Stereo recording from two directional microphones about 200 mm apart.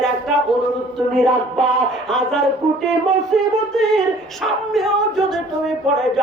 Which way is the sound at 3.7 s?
Centre (ahead or behind).